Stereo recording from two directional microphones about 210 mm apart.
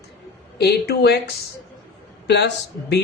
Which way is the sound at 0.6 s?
50° left (ahead or behind).